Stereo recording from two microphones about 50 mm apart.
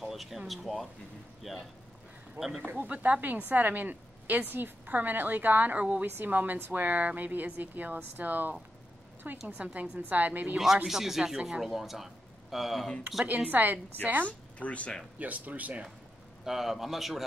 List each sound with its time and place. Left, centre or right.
0.0 s a sound: centre
0.5 s a man's voice: centre
2.6 s a woman's voice: right
6.0 s a woman's voice: right
9.8 s a woman's voice: right
10.9 s speech: centre
13.2 s a woman's voice: right
14.2 s speech: left
15.1 s a woman's voice: right
16.4 s a man's voice: centre